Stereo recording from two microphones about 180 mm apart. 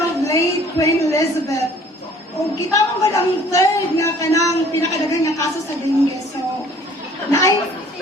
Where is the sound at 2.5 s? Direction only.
20° left (ahead or behind).